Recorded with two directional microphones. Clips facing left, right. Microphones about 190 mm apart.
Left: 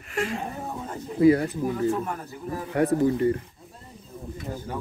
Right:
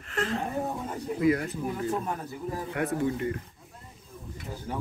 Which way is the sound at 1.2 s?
30° left (ahead or behind).